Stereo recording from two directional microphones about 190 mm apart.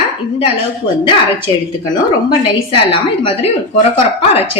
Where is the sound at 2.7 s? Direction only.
30° left (ahead or behind).